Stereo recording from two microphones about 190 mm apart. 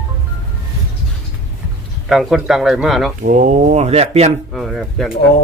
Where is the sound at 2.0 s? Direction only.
Centre (ahead or behind).